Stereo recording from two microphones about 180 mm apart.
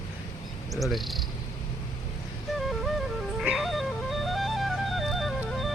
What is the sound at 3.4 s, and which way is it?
Music, centre (ahead or behind).